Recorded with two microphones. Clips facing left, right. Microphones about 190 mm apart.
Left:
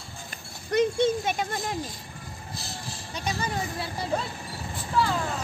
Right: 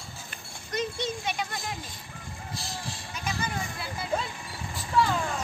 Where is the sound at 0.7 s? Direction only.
55° left (ahead or behind).